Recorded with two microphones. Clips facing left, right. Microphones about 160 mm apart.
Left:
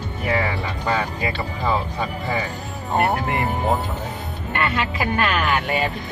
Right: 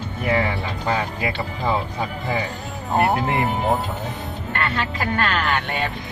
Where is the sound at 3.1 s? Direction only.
20° right (ahead or behind).